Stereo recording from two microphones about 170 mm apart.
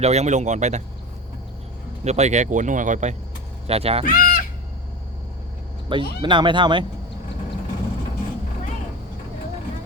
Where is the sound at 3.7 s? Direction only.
35° right (ahead or behind).